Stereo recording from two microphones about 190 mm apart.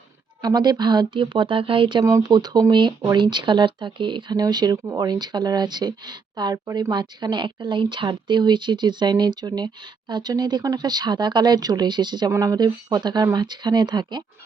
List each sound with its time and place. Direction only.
0.4 s speech: 20° right (ahead or behind)